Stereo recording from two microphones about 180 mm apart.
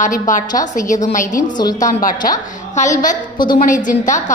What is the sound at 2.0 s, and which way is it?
A woman's voice, 50° left (ahead or behind).